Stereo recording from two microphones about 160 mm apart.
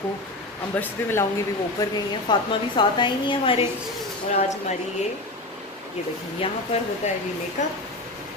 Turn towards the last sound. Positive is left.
turn(degrees=50)  # may be behind; listen again after turning